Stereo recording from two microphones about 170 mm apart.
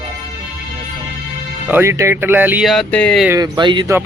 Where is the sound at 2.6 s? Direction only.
5° left (ahead or behind).